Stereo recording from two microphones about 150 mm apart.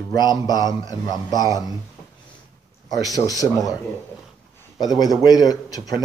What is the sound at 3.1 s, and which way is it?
Speech, 25° left (ahead or behind).